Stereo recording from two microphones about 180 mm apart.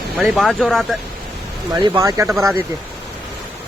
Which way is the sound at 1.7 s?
20° right (ahead or behind).